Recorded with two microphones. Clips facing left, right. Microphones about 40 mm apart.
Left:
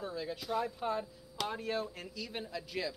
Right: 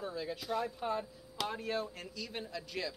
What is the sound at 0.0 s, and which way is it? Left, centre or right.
Speech, centre.